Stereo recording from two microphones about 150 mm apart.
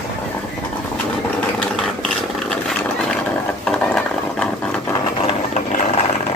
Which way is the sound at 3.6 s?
5° left (ahead or behind).